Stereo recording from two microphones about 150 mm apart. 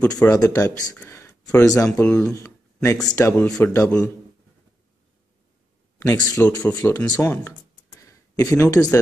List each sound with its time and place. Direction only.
0.3 s speech: 20° left (ahead or behind)
0.9 s a sound: 15° left (ahead or behind)
1.9 s speech: 10° left (ahead or behind)
3.3 s speech: 5° left (ahead or behind)
3.8 s speech: 20° left (ahead or behind)
5.9 s speech: 20° left (ahead or behind)